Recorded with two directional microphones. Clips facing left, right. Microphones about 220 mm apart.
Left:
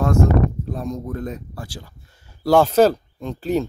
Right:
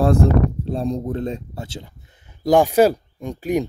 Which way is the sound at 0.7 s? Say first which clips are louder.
Right 4 dB; 30° right (ahead or behind).